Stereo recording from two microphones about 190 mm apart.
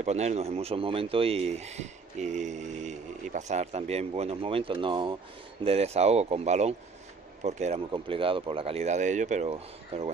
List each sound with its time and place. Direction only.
0.0 s speech: 35° right (ahead or behind)